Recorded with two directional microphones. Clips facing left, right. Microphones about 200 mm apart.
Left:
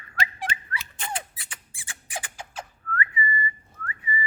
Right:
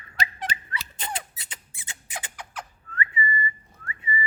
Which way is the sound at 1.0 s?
20° right (ahead or behind).